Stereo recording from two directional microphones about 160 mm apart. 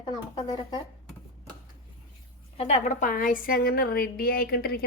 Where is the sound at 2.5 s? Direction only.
45° left (ahead or behind).